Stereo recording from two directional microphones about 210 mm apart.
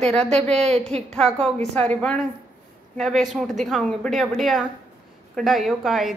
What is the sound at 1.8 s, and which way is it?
Speech, 5° left (ahead or behind).